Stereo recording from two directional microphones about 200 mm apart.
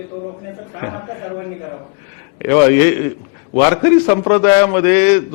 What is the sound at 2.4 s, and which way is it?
A man's voice, 15° left (ahead or behind).